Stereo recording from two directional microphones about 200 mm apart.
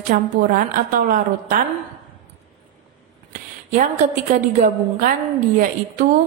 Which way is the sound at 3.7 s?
40° right (ahead or behind).